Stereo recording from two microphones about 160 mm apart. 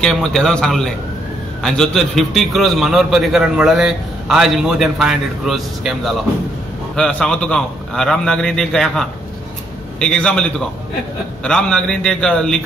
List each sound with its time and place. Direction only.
0.0 s a man's voice: 5° left (ahead or behind)